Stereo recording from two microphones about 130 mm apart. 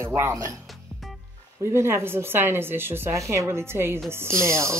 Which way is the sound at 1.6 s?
20° right (ahead or behind).